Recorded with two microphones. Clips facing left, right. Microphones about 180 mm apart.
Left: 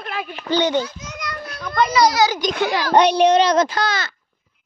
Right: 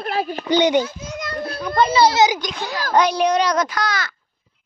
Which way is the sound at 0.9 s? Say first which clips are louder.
Right 4 dB; 30° right (ahead or behind).